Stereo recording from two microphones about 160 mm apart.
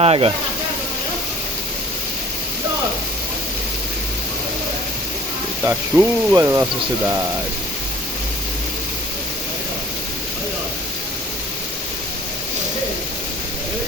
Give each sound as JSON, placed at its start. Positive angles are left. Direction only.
{"t": 0.0, "sound": "speech", "side_deg": -40}
{"t": 5.6, "sound": "speech", "side_deg": -15}